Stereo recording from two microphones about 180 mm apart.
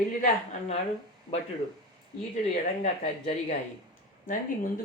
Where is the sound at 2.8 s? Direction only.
35° left (ahead or behind).